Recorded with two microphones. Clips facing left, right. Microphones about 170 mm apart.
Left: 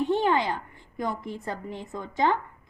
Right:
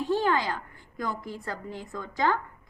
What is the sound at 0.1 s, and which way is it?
A woman's voice, 20° left (ahead or behind).